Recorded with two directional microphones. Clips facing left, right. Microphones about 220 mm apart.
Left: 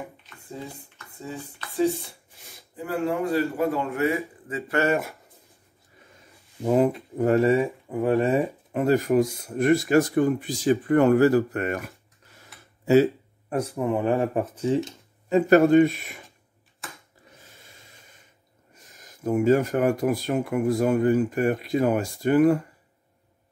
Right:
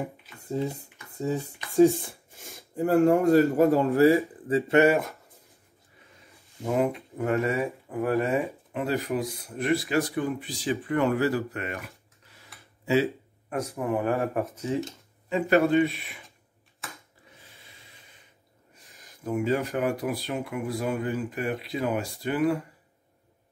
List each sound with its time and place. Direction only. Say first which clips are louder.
0.4 s speech: right 8 dB; 40° right (ahead or behind)
6.6 s speech: left 5 dB; 35° left (ahead or behind)
8.4 s speech: left 4 dB; 45° left (ahead or behind)
13.5 s speech: left 3 dB; 30° left (ahead or behind)
15.2 s speech: left 5 dB; 45° left (ahead or behind)
16.8 s a sound: left 1 dB; centre (ahead or behind)
17.4 s snort: left 2 dB; 45° left (ahead or behind)
18.8 s speech: left 5 dB; 45° left (ahead or behind)